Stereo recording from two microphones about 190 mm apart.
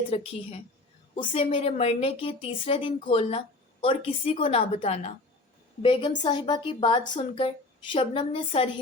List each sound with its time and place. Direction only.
0.1 s a woman's voice: 30° left (ahead or behind)
7.0 s speech: 40° left (ahead or behind)
7.9 s a woman's voice: 30° left (ahead or behind)